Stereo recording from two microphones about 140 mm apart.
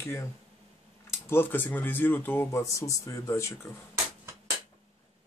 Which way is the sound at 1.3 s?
15° left (ahead or behind).